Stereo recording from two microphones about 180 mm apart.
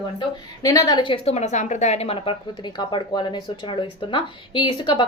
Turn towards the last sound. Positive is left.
turn(degrees=25)  # may be behind; listen again after turning